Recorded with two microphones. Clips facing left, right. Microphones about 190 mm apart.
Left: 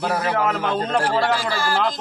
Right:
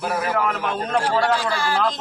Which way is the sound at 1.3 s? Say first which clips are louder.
Even; centre (ahead or behind).